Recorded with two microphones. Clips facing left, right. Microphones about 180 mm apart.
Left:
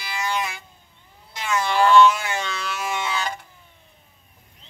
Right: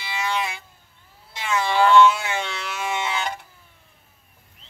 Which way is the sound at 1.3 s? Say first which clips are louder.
Even; 25° right (ahead or behind).